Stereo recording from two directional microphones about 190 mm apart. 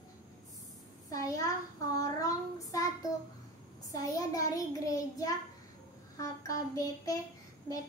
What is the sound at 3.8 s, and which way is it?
A child's voice, 20° left (ahead or behind).